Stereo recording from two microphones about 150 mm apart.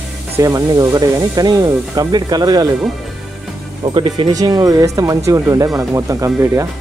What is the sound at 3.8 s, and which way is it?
Speech, 35° right (ahead or behind).